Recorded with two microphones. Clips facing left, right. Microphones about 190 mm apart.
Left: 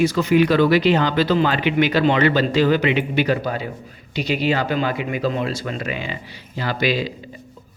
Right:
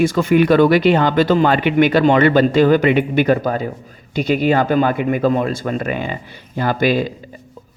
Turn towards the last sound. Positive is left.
turn(degrees=-50)  # may be behind; listen again after turning